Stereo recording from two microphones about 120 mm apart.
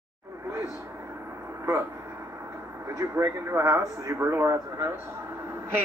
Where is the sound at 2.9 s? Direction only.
30° right (ahead or behind).